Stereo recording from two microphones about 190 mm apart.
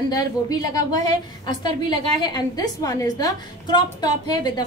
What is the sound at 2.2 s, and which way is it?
A woman's voice, 20° left (ahead or behind).